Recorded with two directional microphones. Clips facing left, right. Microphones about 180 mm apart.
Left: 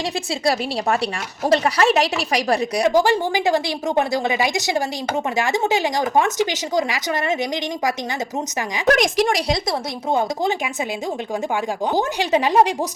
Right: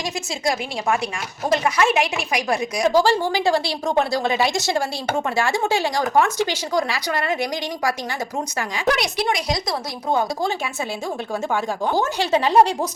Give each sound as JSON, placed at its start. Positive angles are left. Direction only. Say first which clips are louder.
{"t": 1.6, "sound": "a woman's voice", "louder": "left 2 dB", "side_deg": 35}
{"t": 2.9, "sound": "a woman's voice", "louder": "even", "side_deg": 20}
{"t": 8.9, "sound": "speech", "louder": "left 5 dB", "side_deg": 45}
{"t": 10.1, "sound": "speech", "louder": "left 1 dB", "side_deg": 20}
{"t": 11.9, "sound": "a woman's voice", "louder": "left 1 dB", "side_deg": 15}